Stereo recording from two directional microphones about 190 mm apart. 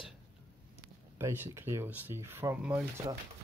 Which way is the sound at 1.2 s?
15° right (ahead or behind).